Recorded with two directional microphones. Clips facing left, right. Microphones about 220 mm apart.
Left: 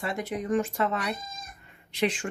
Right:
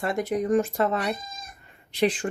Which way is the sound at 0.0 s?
45° right (ahead or behind).